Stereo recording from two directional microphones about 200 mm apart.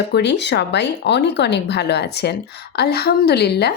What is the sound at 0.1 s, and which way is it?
A woman's voice, 60° left (ahead or behind).